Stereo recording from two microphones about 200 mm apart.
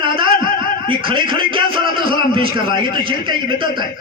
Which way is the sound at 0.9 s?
25° right (ahead or behind).